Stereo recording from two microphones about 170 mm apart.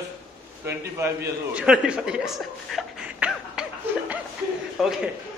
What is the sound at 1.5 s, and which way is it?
Speech, 5° right (ahead or behind).